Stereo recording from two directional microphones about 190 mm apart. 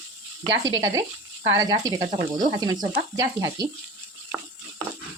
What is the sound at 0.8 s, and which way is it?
Speech, 15° right (ahead or behind).